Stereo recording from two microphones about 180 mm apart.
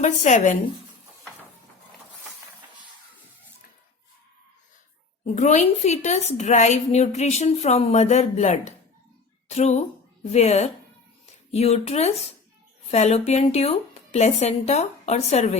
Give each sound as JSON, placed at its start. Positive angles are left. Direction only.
{"t": 0.0, "sound": "a woman's voice", "side_deg": 40}
{"t": 5.2, "sound": "a woman's voice", "side_deg": 40}